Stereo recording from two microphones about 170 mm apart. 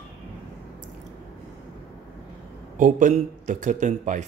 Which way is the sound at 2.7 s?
50° right (ahead or behind).